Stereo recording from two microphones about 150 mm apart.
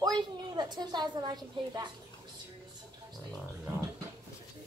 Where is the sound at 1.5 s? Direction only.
30° right (ahead or behind).